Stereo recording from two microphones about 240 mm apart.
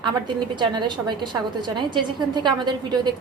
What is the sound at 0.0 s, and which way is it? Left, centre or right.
A woman's voice, centre.